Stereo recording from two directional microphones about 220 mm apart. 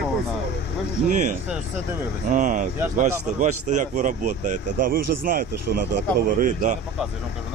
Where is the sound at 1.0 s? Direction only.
35° right (ahead or behind).